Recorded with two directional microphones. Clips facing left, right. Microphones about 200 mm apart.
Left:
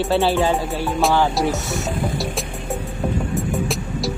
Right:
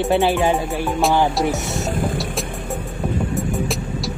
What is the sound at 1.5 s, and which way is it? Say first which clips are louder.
Music: right 1 dB; centre (ahead or behind).